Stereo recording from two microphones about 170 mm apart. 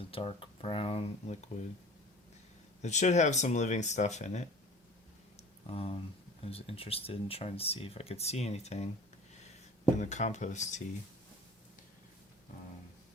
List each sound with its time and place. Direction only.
0.0 s speech: 35° left (ahead or behind)
2.8 s speech: 45° left (ahead or behind)
5.6 s speech: 35° left (ahead or behind)
10.0 s speech: 45° left (ahead or behind)